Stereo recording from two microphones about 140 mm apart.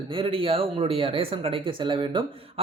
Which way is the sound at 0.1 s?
40° right (ahead or behind).